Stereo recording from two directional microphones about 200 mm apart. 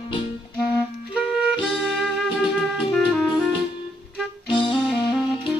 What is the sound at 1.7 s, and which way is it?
Music, centre (ahead or behind).